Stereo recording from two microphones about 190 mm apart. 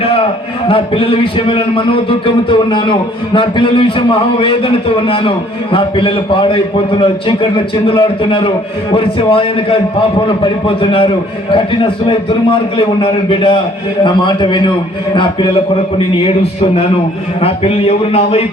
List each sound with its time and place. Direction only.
0.7 s a man's voice: 30° left (ahead or behind)
12.5 s a man's voice: 25° left (ahead or behind)